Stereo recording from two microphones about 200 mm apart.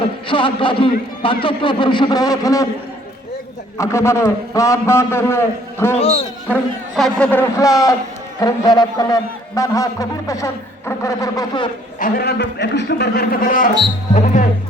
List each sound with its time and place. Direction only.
0.0 s a man's voice: 25° left (ahead or behind)
3.8 s a man's voice: 15° left (ahead or behind)
6.0 s speech: 30° left (ahead or behind)
6.5 s a man's voice: 5° left (ahead or behind); by 11.7 s 20° left (ahead or behind)
11.9 s a man's voice: 45° left (ahead or behind)